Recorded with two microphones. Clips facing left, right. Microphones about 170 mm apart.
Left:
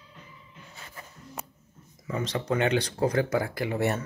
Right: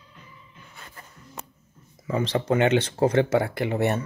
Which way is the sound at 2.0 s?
30° right (ahead or behind).